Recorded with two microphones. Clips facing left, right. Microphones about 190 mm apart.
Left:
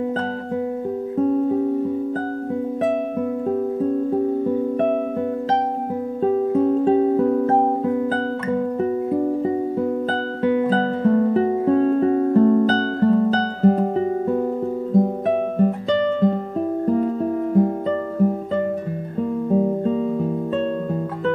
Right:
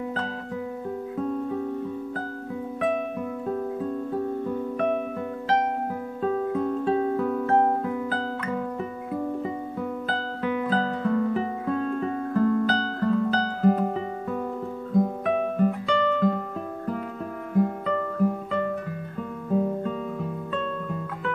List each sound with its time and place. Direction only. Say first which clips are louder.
1.1 s music: left 10 dB; 35° left (ahead or behind)
4.1 s music: left 8 dB; 25° left (ahead or behind)
6.2 s music: left 7 dB; 30° left (ahead or behind)
15.0 s guitar: left 4 dB; 30° left (ahead or behind)
16.8 s music: left 13 dB; 30° left (ahead or behind)
19.5 s music: left 5 dB; 30° left (ahead or behind)